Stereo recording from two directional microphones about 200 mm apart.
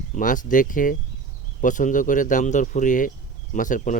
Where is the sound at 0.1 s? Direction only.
40° left (ahead or behind).